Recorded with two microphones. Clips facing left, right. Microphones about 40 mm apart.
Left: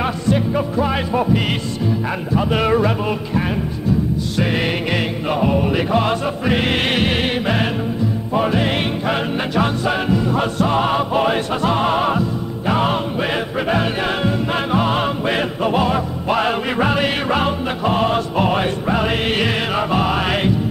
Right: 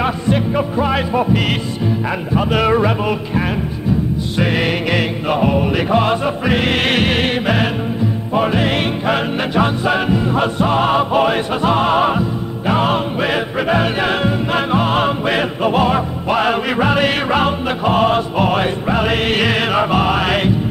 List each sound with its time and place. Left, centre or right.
0.0 s music: right
2.3 s speech: centre
4.4 s music: centre